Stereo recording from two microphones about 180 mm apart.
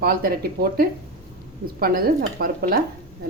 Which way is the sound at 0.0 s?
55° right (ahead or behind).